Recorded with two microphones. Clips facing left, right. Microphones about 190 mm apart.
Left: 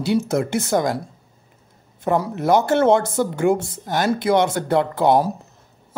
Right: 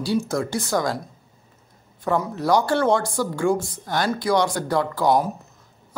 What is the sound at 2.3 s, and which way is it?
Speech, 20° left (ahead or behind).